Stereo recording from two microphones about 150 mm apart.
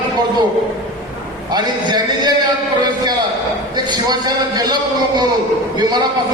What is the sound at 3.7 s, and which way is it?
A man's voice, 30° right (ahead or behind).